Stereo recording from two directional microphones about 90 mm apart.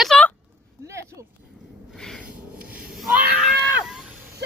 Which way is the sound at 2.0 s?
5° left (ahead or behind).